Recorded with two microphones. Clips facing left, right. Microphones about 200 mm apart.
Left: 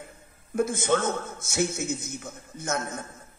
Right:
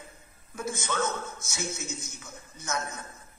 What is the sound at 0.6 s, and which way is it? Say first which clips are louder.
A man's voice: left 7 dB; 55° left (ahead or behind).